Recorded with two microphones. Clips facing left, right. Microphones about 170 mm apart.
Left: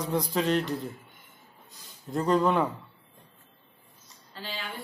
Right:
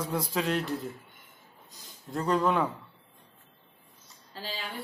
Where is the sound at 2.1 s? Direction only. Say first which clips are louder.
Left 2 dB; centre (ahead or behind).